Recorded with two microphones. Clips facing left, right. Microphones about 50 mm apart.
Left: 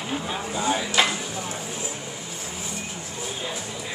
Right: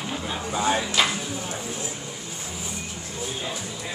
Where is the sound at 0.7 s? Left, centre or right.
Right.